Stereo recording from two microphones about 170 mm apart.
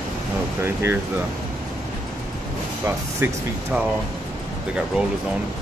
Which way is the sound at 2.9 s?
15° right (ahead or behind).